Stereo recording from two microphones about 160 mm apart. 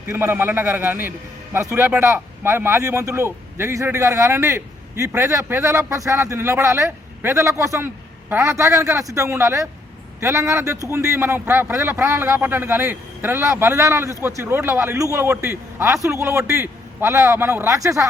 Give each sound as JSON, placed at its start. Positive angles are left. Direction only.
{"t": 0.1, "sound": "a man's voice", "side_deg": -15}